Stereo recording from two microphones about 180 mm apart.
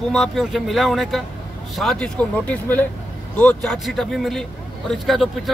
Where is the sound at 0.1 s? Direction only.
Centre (ahead or behind).